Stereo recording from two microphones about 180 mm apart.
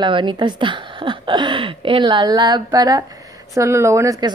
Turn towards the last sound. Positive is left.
turn(degrees=-15)  # may be behind; listen again after turning